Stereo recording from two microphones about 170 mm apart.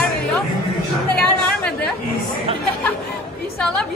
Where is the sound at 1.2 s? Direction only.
5° left (ahead or behind).